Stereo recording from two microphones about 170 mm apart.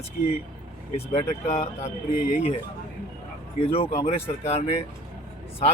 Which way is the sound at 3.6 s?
35° left (ahead or behind).